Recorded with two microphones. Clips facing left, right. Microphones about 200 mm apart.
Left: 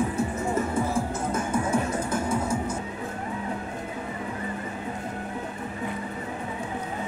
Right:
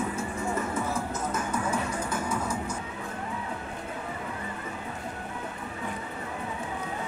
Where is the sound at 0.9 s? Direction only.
30° left (ahead or behind).